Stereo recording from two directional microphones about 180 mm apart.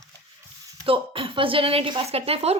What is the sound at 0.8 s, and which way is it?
Speech, 30° right (ahead or behind).